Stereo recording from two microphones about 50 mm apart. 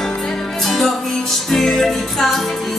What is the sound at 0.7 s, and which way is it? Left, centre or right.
Music, centre.